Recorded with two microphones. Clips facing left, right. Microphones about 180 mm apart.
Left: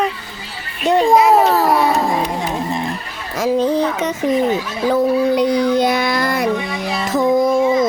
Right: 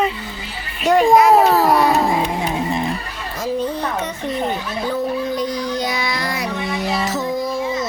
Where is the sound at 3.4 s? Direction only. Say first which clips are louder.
Left 7 dB; 90° left.